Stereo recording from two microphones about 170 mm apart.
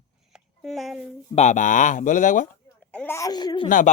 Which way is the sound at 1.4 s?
45° left (ahead or behind).